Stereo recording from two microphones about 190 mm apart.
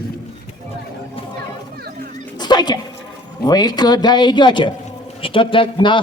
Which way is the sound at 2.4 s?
20° left (ahead or behind).